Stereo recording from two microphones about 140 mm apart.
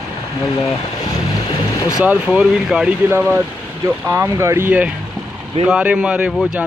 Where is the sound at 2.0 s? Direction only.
5° right (ahead or behind).